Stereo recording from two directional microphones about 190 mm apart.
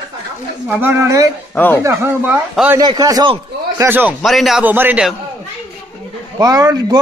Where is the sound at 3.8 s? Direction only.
10° right (ahead or behind).